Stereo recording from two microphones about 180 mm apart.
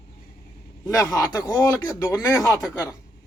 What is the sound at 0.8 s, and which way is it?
A man's voice, 20° left (ahead or behind).